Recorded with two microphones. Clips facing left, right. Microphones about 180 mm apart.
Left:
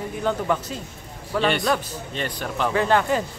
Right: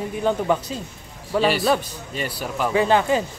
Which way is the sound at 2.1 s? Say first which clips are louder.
Right 1 dB; 10° right (ahead or behind).